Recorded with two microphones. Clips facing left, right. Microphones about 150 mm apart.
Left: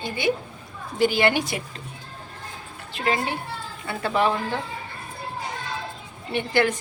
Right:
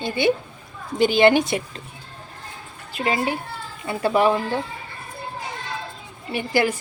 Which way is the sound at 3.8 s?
15° right (ahead or behind).